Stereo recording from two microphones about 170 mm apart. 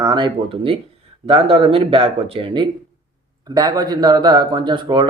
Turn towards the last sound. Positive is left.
turn(degrees=-25)  # may be behind; listen again after turning